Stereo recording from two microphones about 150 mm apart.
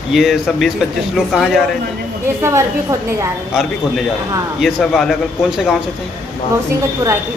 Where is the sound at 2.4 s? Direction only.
20° right (ahead or behind).